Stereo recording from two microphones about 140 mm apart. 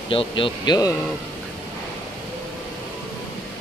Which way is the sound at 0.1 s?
40° left (ahead or behind).